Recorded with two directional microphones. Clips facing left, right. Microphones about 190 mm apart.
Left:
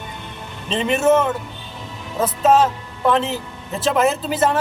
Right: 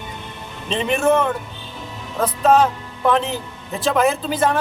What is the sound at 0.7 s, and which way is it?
Speech, centre (ahead or behind).